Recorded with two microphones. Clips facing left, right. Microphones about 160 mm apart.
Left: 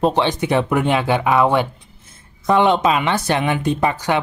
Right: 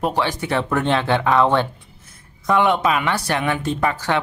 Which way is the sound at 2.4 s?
25° left (ahead or behind).